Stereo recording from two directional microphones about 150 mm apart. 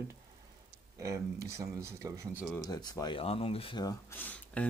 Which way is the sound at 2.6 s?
25° left (ahead or behind).